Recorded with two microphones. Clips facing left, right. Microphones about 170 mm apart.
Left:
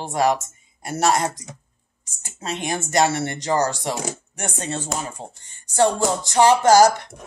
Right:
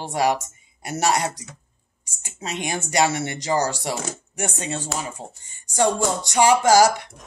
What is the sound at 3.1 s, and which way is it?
Speech, 10° right (ahead or behind).